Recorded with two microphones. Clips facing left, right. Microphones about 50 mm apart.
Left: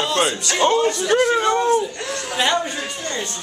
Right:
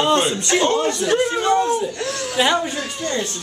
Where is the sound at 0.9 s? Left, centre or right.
Centre.